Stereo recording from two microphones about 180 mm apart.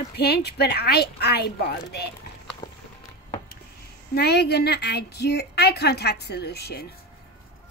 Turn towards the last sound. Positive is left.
turn(degrees=60)  # may be behind; listen again after turning